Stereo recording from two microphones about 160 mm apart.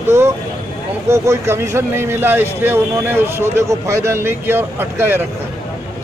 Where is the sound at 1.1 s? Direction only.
15° right (ahead or behind).